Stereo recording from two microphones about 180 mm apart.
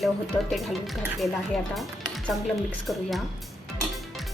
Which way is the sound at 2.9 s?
Centre (ahead or behind).